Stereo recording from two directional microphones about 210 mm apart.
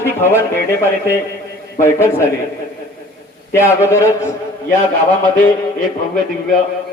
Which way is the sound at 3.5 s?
10° left (ahead or behind).